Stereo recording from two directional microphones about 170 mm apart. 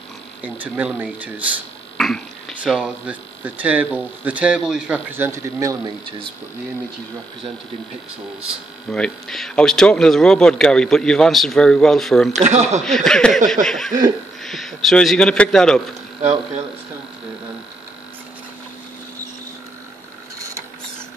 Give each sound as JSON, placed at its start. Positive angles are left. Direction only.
{"t": 0.4, "sound": "speech", "side_deg": -10}
{"t": 2.0, "sound": "a sound", "side_deg": 5}
{"t": 2.6, "sound": "speech", "side_deg": -5}
{"t": 8.9, "sound": "speech", "side_deg": 5}
{"t": 12.3, "sound": "speech", "side_deg": -45}
{"t": 12.8, "sound": "speech", "side_deg": 5}